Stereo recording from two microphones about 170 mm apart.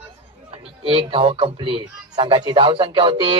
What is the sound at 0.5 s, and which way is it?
A man's voice, 35° right (ahead or behind).